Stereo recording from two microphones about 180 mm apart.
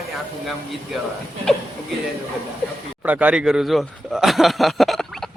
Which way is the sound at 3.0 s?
10° right (ahead or behind).